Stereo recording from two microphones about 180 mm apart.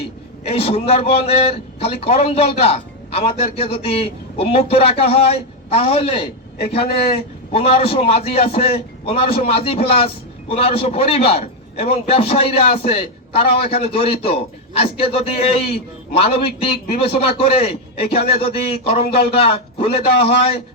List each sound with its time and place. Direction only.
0.4 s a man's voice: 35° left (ahead or behind)
17.1 s a man's voice: 30° left (ahead or behind)